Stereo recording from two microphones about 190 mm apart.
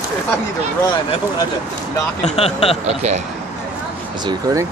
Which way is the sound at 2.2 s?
35° left (ahead or behind).